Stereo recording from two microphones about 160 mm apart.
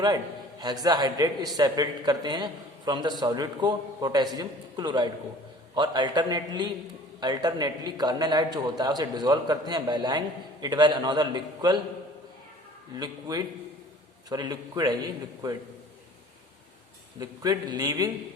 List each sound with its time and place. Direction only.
0.6 s a man's voice: 25° right (ahead or behind)
13.0 s a man's voice: 25° right (ahead or behind)
17.2 s a man's voice: 25° right (ahead or behind)